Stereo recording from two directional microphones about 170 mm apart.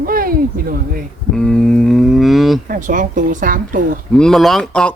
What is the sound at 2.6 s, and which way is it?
A woman's voice, 50° right (ahead or behind).